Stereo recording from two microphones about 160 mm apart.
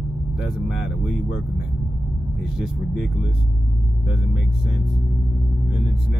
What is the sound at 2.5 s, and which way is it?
Speech, centre (ahead or behind).